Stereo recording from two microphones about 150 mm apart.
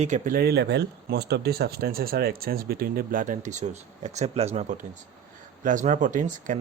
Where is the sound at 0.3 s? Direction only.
90° right.